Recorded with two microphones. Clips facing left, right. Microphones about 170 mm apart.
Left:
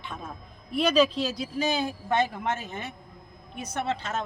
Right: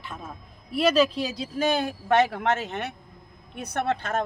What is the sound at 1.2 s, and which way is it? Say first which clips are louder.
Speech: left 1 dB; 25° right (ahead or behind).